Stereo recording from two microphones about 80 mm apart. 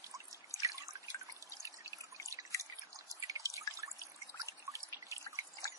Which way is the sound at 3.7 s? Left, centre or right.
Right.